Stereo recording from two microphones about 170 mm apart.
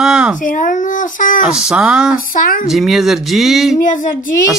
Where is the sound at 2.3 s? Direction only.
55° left (ahead or behind).